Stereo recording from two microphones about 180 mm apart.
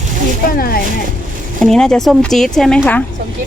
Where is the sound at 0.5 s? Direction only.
55° left (ahead or behind).